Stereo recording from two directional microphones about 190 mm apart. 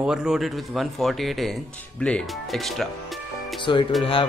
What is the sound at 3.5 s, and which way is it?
Speech, 25° left (ahead or behind).